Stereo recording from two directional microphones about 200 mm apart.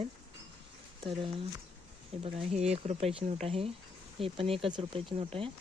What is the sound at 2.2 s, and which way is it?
Speech, 30° right (ahead or behind).